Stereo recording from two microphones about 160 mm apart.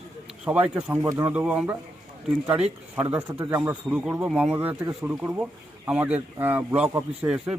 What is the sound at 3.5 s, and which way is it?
Speech, 10° right (ahead or behind).